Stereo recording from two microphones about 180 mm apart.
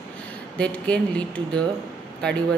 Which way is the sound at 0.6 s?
5° left (ahead or behind).